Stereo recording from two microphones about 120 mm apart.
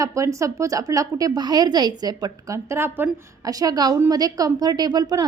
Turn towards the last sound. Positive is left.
turn(degrees=-35)  # may be behind; listen again after turning